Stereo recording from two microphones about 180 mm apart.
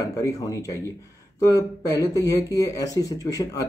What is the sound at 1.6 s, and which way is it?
Speech, 20° left (ahead or behind).